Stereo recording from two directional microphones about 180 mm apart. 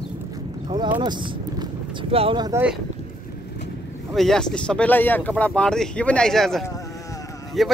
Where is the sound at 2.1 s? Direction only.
30° right (ahead or behind).